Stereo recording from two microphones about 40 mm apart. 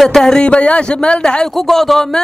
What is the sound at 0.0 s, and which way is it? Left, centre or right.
Speech, centre.